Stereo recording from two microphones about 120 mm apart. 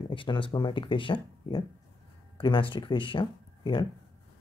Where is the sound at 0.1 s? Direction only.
45° left (ahead or behind).